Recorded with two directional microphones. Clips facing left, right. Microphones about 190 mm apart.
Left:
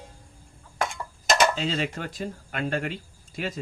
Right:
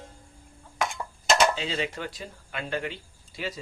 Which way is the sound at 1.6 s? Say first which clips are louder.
Left 2 dB; 45° left (ahead or behind).